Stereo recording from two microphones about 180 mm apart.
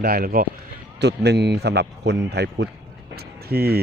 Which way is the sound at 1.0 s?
65° right (ahead or behind).